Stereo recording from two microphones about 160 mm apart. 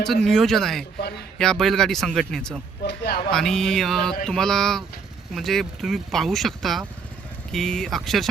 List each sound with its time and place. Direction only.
0.1 s speech: centre (ahead or behind)
2.8 s a man's voice: 85° left
3.3 s speech: 5° left (ahead or behind)